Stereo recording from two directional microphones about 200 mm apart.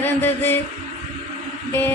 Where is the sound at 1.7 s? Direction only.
10° left (ahead or behind).